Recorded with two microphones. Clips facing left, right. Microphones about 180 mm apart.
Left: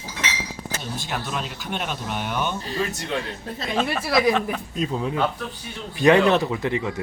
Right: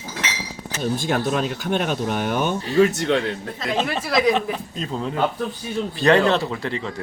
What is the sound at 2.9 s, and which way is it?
Speech, 70° right (ahead or behind).